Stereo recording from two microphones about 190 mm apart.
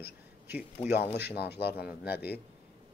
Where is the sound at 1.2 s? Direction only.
60° left (ahead or behind).